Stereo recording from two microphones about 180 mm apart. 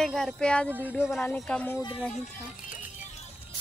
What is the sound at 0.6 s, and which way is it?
Speech, 10° right (ahead or behind).